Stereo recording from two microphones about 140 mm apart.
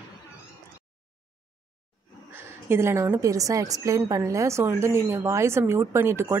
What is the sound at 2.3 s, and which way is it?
Speech, 15° right (ahead or behind).